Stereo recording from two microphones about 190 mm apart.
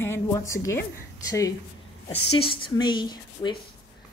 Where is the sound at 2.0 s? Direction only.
30° left (ahead or behind).